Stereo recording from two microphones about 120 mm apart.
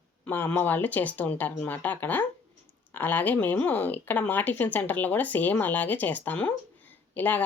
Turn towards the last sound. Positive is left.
turn(degrees=15)  # may be behind; listen again after turning